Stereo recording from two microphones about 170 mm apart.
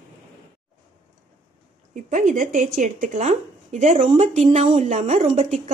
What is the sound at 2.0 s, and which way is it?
A woman's voice, 50° right (ahead or behind).